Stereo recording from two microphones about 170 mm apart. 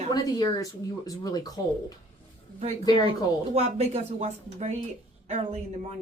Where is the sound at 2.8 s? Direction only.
25° left (ahead or behind).